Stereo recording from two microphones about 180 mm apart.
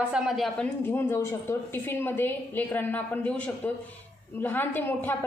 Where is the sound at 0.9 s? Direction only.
15° left (ahead or behind).